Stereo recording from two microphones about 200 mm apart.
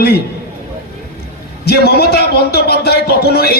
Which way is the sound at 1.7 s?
50° left (ahead or behind).